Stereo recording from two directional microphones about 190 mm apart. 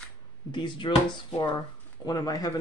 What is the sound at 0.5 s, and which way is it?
Speech, 25° left (ahead or behind).